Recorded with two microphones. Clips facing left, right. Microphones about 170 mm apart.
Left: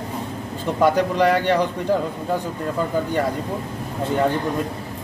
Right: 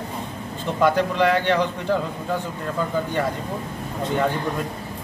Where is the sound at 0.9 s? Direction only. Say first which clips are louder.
Left 2 dB; 40° left (ahead or behind).